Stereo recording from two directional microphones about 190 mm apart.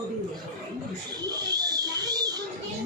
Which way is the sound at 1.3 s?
20° right (ahead or behind).